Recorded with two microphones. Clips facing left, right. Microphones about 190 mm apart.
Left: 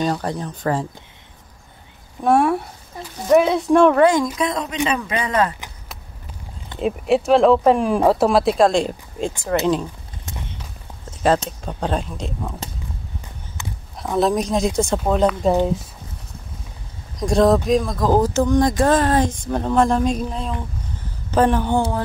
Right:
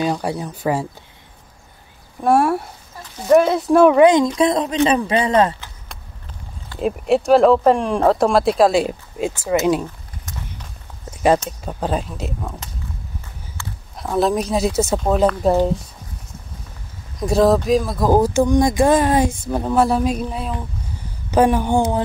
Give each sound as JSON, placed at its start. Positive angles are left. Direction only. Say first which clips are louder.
{"t": 0.0, "sound": "speech", "louder": "right 1 dB", "side_deg": -10}
{"t": 2.2, "sound": "speech", "louder": "right 1 dB", "side_deg": 0}
{"t": 4.0, "sound": "speech", "louder": "right 3 dB", "side_deg": -20}
{"t": 4.4, "sound": "speech", "louder": "right 6 dB", "side_deg": -30}
{"t": 6.8, "sound": "speech", "louder": "right 1 dB", "side_deg": 0}
{"t": 11.1, "sound": "speech", "louder": "right 2 dB", "side_deg": -10}
{"t": 13.6, "sound": "a sound", "louder": "left 1 dB", "side_deg": 20}
{"t": 14.1, "sound": "speech", "louder": "even", "side_deg": 0}
{"t": 17.2, "sound": "speech", "louder": "right 1 dB", "side_deg": -5}